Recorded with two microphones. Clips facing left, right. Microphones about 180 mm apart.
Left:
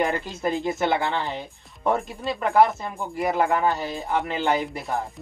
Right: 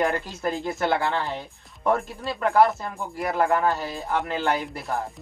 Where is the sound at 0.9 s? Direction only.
Centre (ahead or behind).